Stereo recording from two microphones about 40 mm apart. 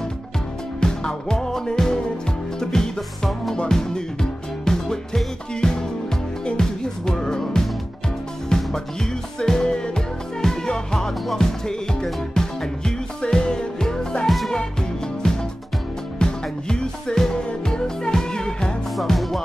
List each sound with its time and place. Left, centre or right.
0.7 s music: centre
3.5 s speech: centre
6.4 s music: centre
14.2 s music: centre
15.2 s music: centre
18.9 s music: centre